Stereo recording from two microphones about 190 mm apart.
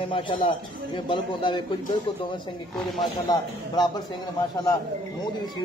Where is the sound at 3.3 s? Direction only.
20° left (ahead or behind).